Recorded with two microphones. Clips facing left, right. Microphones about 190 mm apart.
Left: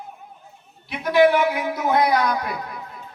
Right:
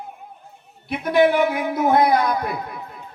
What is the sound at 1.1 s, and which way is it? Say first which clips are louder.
A man's voice: even; 50° right (ahead or behind).